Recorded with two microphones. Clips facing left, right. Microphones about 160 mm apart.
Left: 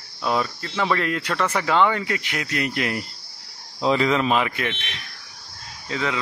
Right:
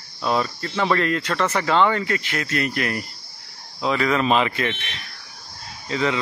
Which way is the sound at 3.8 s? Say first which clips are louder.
Left 2 dB; 30° left (ahead or behind).